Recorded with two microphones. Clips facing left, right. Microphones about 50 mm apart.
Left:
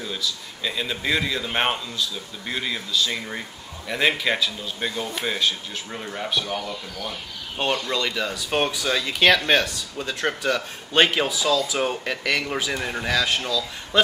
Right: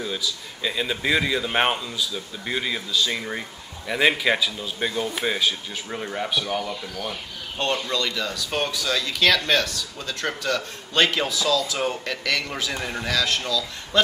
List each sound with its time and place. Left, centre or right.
0.0 s speech: centre
7.6 s speech: centre